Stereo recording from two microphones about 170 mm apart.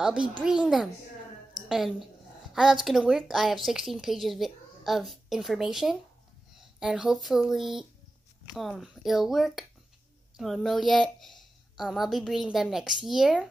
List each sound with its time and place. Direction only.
0.4 s a woman's voice: 5° right (ahead or behind)